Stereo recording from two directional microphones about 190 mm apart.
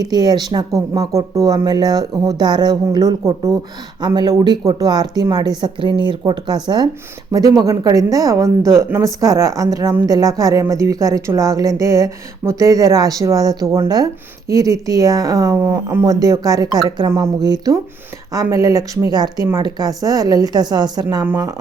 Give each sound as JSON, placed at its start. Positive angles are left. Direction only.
{"t": 0.0, "sound": "a woman's voice", "side_deg": -20}